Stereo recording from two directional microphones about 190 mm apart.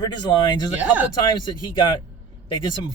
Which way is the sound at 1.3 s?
20° left (ahead or behind).